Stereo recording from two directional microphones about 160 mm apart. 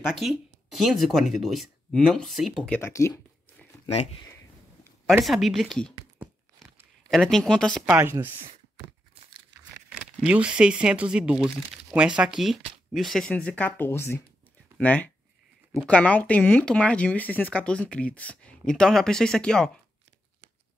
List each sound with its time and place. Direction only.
0.1 s speech: centre (ahead or behind)
2.8 s speech: 20° left (ahead or behind)
5.2 s speech: centre (ahead or behind)
6.6 s a sound: centre (ahead or behind)
7.8 s speech: 15° right (ahead or behind)
9.8 s speech: 5° right (ahead or behind)